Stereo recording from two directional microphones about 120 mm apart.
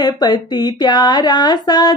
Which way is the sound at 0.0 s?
35° left (ahead or behind).